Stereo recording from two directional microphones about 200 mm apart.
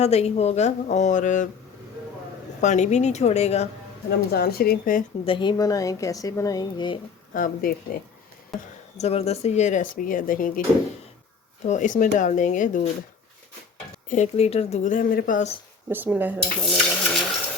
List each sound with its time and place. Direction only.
0.0 s speech: 30° left (ahead or behind)
2.6 s speech: 35° left (ahead or behind)
4.3 s speech: 50° left (ahead or behind)
5.2 s speech: 25° left (ahead or behind)
7.3 s speech: 45° left (ahead or behind)
8.5 s speech: centre (ahead or behind)
9.0 s speech: 30° left (ahead or behind)
11.6 s speech: 35° left (ahead or behind)
14.1 s speech: 35° left (ahead or behind)
15.9 s cutlery: 10° right (ahead or behind)
16.6 s a sound: centre (ahead or behind)